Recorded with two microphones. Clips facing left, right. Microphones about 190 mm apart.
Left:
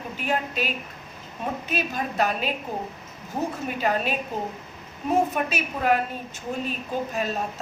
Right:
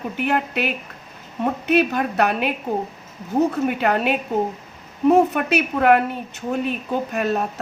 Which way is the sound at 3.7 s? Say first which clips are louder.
Right 5 dB; 65° right (ahead or behind).